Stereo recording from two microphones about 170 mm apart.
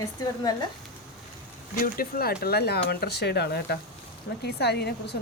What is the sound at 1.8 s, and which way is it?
Speech, 60° left (ahead or behind).